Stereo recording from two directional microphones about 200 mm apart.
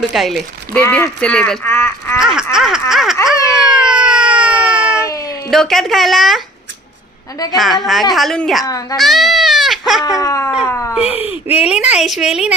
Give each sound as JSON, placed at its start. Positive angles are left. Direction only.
{"t": 0.1, "sound": "speech", "side_deg": 0}
{"t": 2.1, "sound": "a sound", "side_deg": -5}
{"t": 3.2, "sound": "baby cry", "side_deg": -5}
{"t": 5.0, "sound": "a sound", "side_deg": 15}
{"t": 5.5, "sound": "speech", "side_deg": 0}
{"t": 7.5, "sound": "speech", "side_deg": 0}
{"t": 8.6, "sound": "a child's voice", "side_deg": 15}
{"t": 9.0, "sound": "goat", "side_deg": 0}
{"t": 10.2, "sound": "dog", "side_deg": 15}
{"t": 10.7, "sound": "cat", "side_deg": 15}
{"t": 11.0, "sound": "a sound", "side_deg": 30}
{"t": 11.3, "sound": "speech", "side_deg": -5}